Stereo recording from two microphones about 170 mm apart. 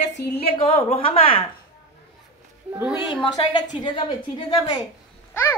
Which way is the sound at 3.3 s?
25° left (ahead or behind).